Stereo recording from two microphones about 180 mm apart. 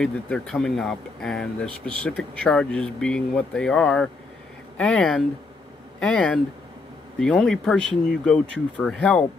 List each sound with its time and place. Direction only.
0.0 s speech: 5° left (ahead or behind)